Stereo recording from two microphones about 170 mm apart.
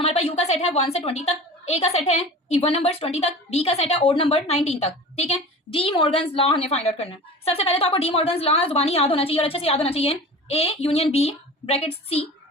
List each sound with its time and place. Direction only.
0.0 s a woman's voice: 35° left (ahead or behind)